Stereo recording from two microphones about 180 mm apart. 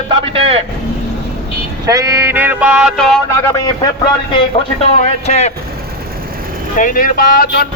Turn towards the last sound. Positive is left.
turn(degrees=55)  # may be behind; listen again after turning